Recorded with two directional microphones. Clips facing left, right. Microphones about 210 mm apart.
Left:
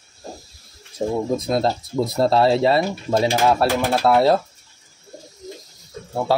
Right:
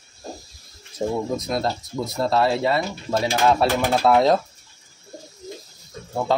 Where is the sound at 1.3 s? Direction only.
30° left (ahead or behind).